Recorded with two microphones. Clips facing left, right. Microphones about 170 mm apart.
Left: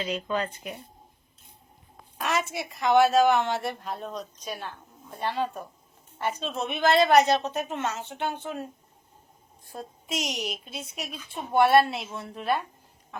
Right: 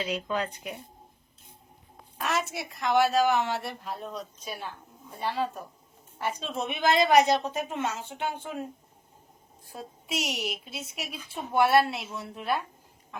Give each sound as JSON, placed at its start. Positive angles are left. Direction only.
{"t": 0.0, "sound": "a woman's voice", "side_deg": -10}
{"t": 2.1, "sound": "a woman's voice", "side_deg": 0}
{"t": 9.7, "sound": "a woman's voice", "side_deg": -5}